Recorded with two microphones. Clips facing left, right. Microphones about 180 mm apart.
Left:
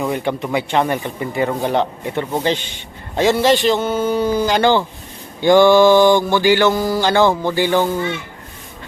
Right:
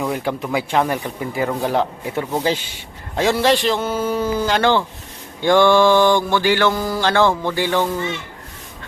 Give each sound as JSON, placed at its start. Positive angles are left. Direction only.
{"t": 0.0, "sound": "mantra", "side_deg": 0}